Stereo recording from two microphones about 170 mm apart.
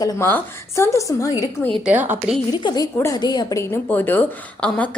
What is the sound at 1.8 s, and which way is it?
Speech, 10° right (ahead or behind).